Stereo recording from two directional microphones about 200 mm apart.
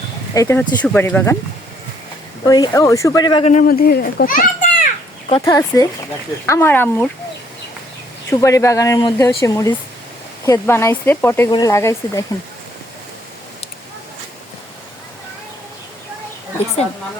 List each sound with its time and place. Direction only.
0.3 s speech: 10° left (ahead or behind)
2.4 s speech: 20° left (ahead or behind)
3.5 s a child's voice: 45° left (ahead or behind)
5.5 s speech: 15° left (ahead or behind)
8.3 s speech: 15° left (ahead or behind)